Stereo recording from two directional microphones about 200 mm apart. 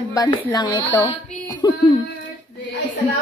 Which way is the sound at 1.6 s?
20° left (ahead or behind).